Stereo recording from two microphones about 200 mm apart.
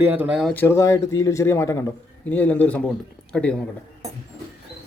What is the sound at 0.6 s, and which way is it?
A man's voice, 15° left (ahead or behind).